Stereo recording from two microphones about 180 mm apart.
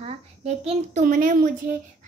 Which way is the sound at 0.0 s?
35° right (ahead or behind).